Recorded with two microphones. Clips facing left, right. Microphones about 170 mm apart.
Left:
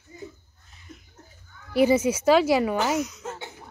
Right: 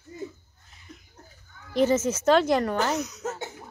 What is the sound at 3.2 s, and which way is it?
Cough, 45° right (ahead or behind).